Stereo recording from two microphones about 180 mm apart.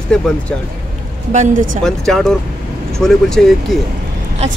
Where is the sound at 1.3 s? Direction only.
40° right (ahead or behind).